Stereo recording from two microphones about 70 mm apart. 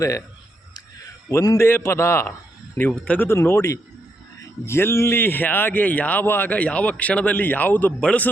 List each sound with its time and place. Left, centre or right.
1.3 s a man's voice: left
1.5 s a man's voice: left
2.9 s speech: centre
3.2 s a man's voice: left